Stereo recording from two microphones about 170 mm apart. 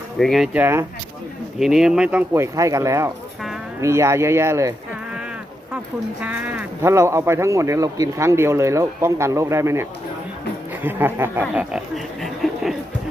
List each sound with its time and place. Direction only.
0.2 s speech: centre (ahead or behind)
1.5 s speech: centre (ahead or behind)
6.2 s speech: 10° right (ahead or behind)
10.8 s speech: 10° right (ahead or behind)
12.2 s a sound: centre (ahead or behind)